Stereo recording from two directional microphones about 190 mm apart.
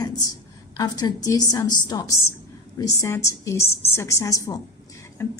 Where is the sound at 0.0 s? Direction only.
20° left (ahead or behind).